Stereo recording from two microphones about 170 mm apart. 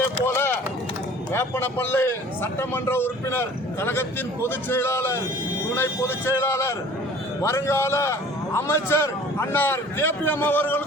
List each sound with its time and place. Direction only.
0.3 s run: 15° left (ahead or behind)
1.3 s a man's voice: 15° left (ahead or behind)